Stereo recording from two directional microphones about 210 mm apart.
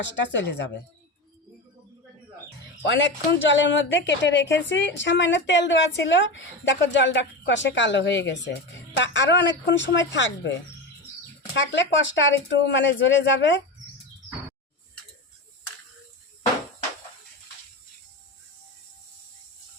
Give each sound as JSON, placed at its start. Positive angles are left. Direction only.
{"t": 0.0, "sound": "a woman's voice", "side_deg": 55}
{"t": 2.8, "sound": "a woman's voice", "side_deg": 60}
{"t": 11.5, "sound": "a woman's voice", "side_deg": 60}